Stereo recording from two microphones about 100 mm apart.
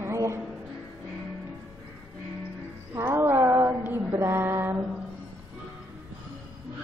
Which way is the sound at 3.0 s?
25° right (ahead or behind).